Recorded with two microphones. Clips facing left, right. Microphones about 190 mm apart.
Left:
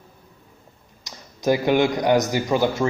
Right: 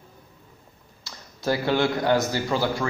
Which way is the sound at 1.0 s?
20° left (ahead or behind).